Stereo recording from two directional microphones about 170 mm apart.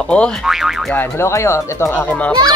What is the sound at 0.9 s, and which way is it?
Speech, 15° left (ahead or behind).